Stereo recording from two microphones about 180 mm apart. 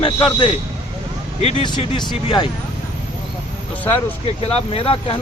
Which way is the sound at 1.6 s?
25° left (ahead or behind).